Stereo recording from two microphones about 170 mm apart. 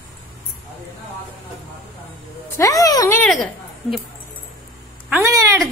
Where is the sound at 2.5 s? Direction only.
20° left (ahead or behind).